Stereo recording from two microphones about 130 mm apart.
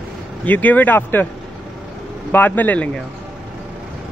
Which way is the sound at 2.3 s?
15° left (ahead or behind).